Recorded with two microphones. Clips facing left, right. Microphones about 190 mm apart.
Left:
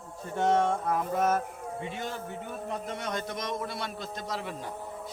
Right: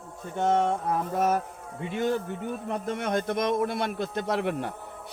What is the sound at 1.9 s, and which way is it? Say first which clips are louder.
A man's voice: right 9 dB; 50° right (ahead or behind).